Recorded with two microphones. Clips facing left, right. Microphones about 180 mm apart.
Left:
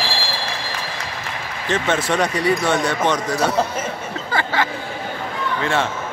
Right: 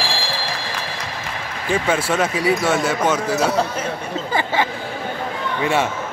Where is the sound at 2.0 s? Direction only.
5° right (ahead or behind).